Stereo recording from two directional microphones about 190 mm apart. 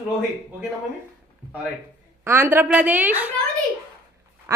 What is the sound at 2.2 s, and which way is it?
A woman's voice, 10° right (ahead or behind).